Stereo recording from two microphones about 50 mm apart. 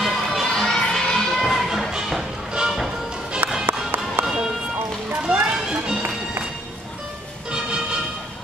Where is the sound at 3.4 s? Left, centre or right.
Right.